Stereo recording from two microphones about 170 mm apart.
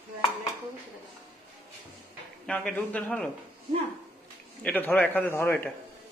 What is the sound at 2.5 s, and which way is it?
Speech, 10° left (ahead or behind).